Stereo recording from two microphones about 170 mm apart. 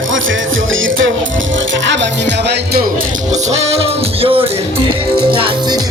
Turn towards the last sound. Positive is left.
turn(degrees=-35)  # may be behind; listen again after turning